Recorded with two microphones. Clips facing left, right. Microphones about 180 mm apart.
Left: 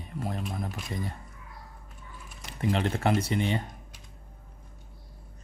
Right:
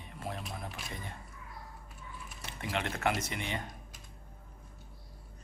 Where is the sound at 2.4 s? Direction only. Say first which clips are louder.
Left 8 dB; 35° left (ahead or behind).